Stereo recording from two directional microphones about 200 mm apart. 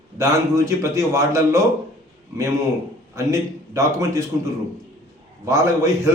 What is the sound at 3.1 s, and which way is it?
A man's voice, 15° right (ahead or behind).